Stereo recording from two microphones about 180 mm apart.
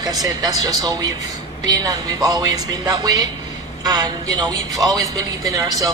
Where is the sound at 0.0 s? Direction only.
20° right (ahead or behind).